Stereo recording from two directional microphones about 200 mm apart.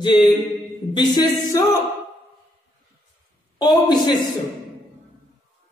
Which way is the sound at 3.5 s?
20° left (ahead or behind).